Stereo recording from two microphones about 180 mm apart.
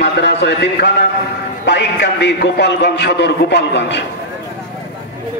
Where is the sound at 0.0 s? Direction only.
75° left (ahead or behind).